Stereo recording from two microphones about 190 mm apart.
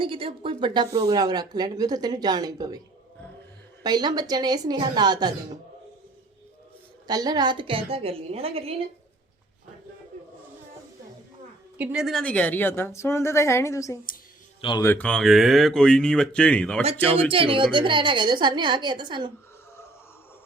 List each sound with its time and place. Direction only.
0.0 s a woman's voice: 30° right (ahead or behind)
3.8 s a woman's voice: 20° right (ahead or behind)
7.1 s a woman's voice: 20° right (ahead or behind)
11.8 s a woman's voice: 5° right (ahead or behind); by 14.8 s 25° left (ahead or behind)
14.8 s speech: 5° left (ahead or behind)
17.2 s a woman's voice: 30° right (ahead or behind)